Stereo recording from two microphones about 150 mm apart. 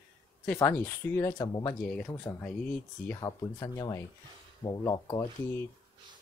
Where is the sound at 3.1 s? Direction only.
25° left (ahead or behind).